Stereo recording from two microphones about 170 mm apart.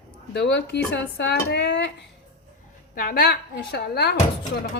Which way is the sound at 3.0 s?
60° left (ahead or behind).